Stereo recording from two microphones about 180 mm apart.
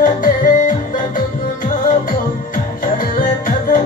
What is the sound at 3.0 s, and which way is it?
Music, 50° left (ahead or behind).